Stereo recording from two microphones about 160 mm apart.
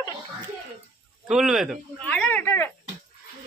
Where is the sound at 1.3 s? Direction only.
Centre (ahead or behind); by 2.7 s 15° left (ahead or behind).